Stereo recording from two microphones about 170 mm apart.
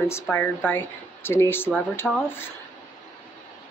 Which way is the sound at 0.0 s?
15° left (ahead or behind).